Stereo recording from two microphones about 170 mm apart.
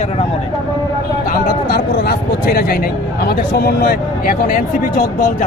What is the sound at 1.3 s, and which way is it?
Speech, 65° left (ahead or behind).